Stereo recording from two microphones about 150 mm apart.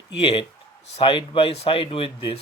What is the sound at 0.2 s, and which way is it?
Speech, 40° left (ahead or behind).